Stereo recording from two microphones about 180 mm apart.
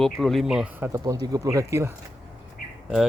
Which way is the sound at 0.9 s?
20° right (ahead or behind).